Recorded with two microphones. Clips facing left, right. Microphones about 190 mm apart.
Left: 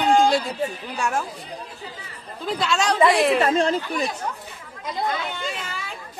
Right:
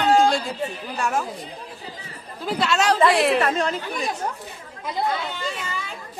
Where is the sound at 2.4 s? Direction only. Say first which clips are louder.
Right 2 dB; 5° right (ahead or behind).